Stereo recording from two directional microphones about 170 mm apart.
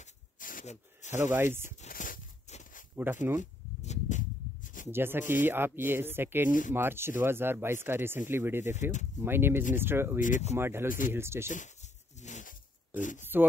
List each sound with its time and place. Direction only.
0.0 s a sound: 55° left (ahead or behind)
1.1 s speech: 15° right (ahead or behind)
1.8 s a sound: 50° left (ahead or behind)
3.0 s speech: 10° right (ahead or behind)
3.3 s a sound: 45° left (ahead or behind)
4.8 s speech: 15° right (ahead or behind)
10.2 s speech: 50° left (ahead or behind)
10.5 s speech: 15° right (ahead or behind)
10.9 s speech: 50° left (ahead or behind)
11.1 s speech: 15° right (ahead or behind)
11.5 s a sound: 45° left (ahead or behind)
13.2 s speech: 10° right (ahead or behind)